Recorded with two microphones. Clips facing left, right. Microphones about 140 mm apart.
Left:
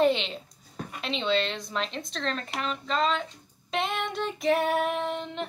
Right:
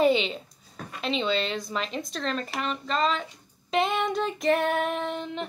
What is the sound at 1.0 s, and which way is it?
Speech, centre (ahead or behind).